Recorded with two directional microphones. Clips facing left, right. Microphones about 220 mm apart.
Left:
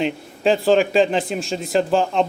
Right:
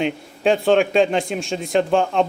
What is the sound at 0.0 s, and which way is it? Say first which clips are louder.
Speech: even; centre (ahead or behind).